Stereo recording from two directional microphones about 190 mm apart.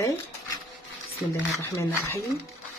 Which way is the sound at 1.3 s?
10° left (ahead or behind).